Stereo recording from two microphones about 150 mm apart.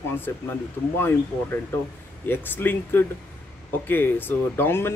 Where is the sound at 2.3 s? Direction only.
15° left (ahead or behind).